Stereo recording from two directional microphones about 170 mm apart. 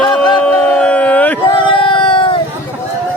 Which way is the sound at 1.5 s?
30° left (ahead or behind).